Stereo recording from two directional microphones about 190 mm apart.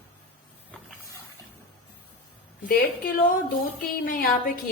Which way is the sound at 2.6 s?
50° left (ahead or behind).